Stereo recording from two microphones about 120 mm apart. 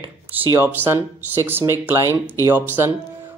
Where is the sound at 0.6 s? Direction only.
20° right (ahead or behind).